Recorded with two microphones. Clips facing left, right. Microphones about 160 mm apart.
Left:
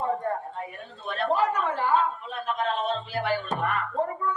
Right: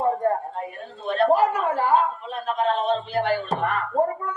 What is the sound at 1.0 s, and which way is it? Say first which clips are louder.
Speech: right 6 dB; 40° right (ahead or behind).